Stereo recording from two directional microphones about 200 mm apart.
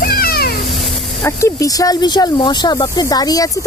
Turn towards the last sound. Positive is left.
turn(degrees=20)  # may be behind; listen again after turning